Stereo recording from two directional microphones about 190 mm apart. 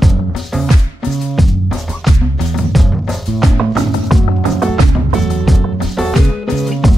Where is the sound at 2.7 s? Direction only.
Centre (ahead or behind).